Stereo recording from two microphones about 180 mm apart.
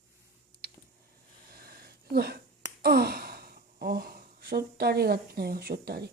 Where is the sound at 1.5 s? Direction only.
60° right (ahead or behind).